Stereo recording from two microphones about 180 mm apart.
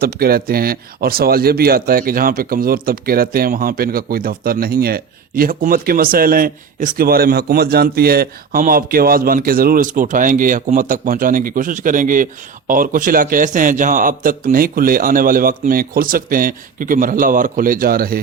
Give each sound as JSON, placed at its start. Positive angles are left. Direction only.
{"t": 0.0, "sound": "a man's voice", "side_deg": -55}